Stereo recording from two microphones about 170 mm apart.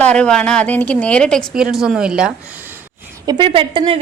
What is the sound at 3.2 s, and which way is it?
Speech, 25° right (ahead or behind).